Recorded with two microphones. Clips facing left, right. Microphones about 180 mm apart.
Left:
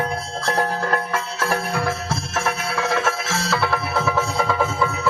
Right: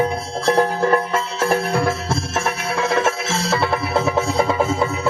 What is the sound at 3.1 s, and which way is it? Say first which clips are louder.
Music: right 3 dB; 25° right (ahead or behind).